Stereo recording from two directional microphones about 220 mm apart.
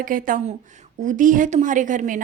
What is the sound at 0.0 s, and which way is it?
A woman's voice, 40° right (ahead or behind).